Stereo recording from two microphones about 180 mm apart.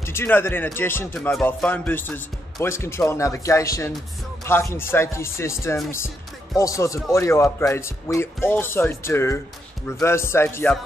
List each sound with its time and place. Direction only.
0.0 s speech: 15° left (ahead or behind)